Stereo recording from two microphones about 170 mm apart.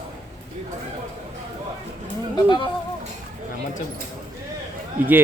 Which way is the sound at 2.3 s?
25° left (ahead or behind).